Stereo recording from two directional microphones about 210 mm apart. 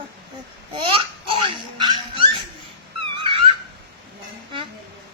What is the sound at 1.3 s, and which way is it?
Dog, 25° right (ahead or behind).